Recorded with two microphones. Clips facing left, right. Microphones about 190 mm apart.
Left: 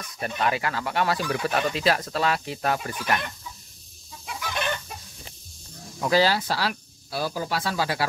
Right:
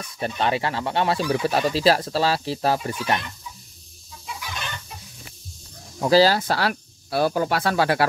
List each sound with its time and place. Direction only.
0.2 s speech: 30° right (ahead or behind)
5.9 s speech: 30° right (ahead or behind)
6.3 s speech: 55° right (ahead or behind)